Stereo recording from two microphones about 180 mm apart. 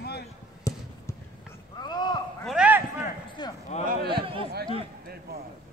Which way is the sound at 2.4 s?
5° right (ahead or behind).